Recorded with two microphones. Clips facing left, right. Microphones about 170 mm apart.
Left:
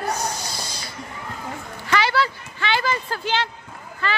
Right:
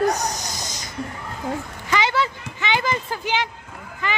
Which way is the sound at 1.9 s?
20° right (ahead or behind).